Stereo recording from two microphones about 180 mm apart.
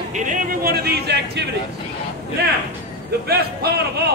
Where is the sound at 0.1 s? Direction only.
45° right (ahead or behind); by 1.4 s 65° right (ahead or behind).